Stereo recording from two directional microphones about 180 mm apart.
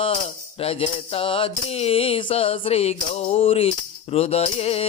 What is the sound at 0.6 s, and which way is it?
Music, 35° left (ahead or behind).